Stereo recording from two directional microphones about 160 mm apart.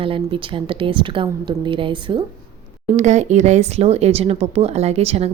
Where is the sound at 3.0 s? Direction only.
45° right (ahead or behind).